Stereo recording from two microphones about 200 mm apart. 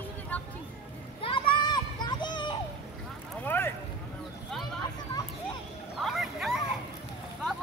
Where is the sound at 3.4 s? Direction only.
10° left (ahead or behind).